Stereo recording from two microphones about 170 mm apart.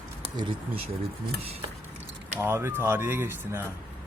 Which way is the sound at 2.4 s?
15° right (ahead or behind).